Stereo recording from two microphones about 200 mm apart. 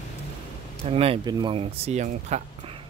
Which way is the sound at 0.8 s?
30° right (ahead or behind).